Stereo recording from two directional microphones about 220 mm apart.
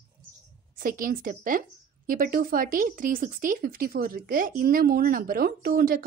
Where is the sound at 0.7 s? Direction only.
40° right (ahead or behind).